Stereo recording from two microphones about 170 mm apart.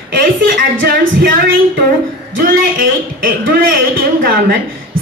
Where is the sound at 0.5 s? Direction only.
55° right (ahead or behind).